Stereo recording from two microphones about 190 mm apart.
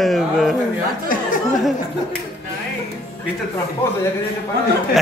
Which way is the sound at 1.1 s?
45° left (ahead or behind).